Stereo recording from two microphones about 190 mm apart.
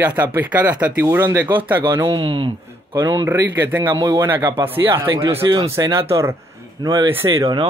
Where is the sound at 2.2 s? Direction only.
25° right (ahead or behind).